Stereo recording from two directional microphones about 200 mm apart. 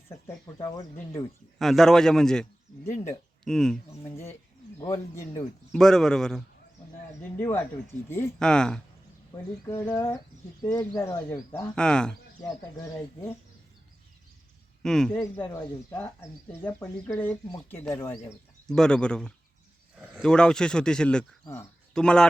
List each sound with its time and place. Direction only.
0.1 s speech: 15° left (ahead or behind)
1.5 s speech: centre (ahead or behind)
2.8 s speech: 15° left (ahead or behind)
3.4 s speech: 5° left (ahead or behind)
4.8 s speech: 15° left (ahead or behind)
5.7 s speech: 5° left (ahead or behind)
9.6 s speech: 15° left (ahead or behind)
11.7 s speech: 5° left (ahead or behind)
12.7 s speech: 15° left (ahead or behind)
14.8 s speech: 5° left (ahead or behind)
15.2 s speech: 20° left (ahead or behind)
18.7 s speech: 5° left (ahead or behind)